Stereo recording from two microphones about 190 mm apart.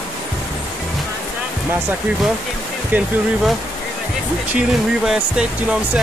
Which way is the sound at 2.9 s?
10° right (ahead or behind).